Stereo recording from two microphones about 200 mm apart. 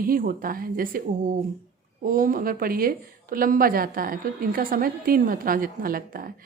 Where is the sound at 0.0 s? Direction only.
45° right (ahead or behind).